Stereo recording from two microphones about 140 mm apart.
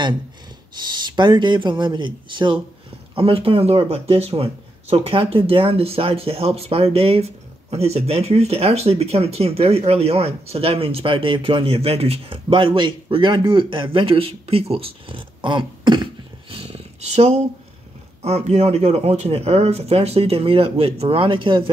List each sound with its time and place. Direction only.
0.7 s speech: 30° right (ahead or behind)